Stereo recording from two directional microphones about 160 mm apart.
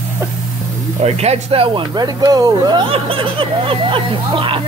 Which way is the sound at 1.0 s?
40° right (ahead or behind).